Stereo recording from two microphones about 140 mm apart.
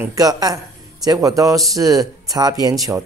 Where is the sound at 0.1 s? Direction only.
25° right (ahead or behind).